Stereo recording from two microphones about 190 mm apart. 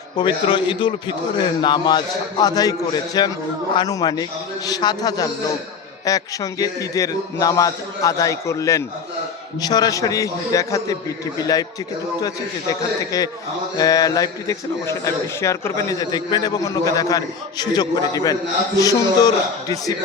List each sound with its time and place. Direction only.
0.2 s a man's voice: 25° left (ahead or behind)
13.1 s a man's voice: 20° left (ahead or behind)